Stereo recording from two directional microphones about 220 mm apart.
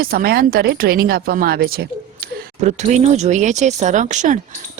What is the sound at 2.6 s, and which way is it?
Speech, 30° right (ahead or behind).